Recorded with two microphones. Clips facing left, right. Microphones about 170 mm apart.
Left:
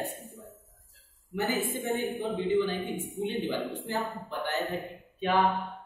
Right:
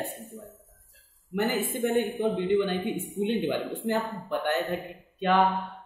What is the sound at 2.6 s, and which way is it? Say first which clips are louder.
Speech: right 3 dB; 60° right (ahead or behind).